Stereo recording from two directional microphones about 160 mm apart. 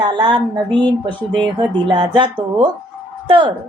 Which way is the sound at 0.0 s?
30° right (ahead or behind).